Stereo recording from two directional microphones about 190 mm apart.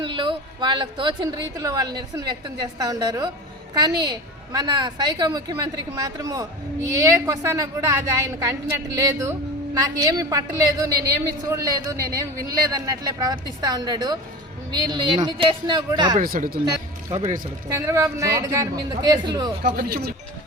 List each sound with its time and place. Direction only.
0.0 s a woman's voice: 25° right (ahead or behind)
16.1 s speech: 45° right (ahead or behind)
17.2 s a woman's voice: 15° right (ahead or behind)
19.6 s speech: 55° right (ahead or behind)